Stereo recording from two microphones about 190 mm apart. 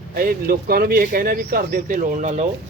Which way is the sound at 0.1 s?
50° right (ahead or behind).